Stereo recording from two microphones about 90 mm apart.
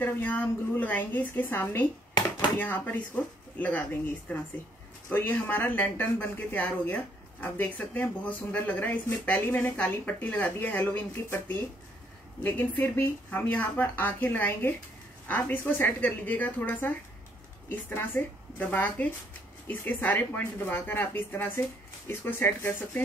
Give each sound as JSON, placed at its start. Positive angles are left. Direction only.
{"t": 0.0, "sound": "speech", "side_deg": 20}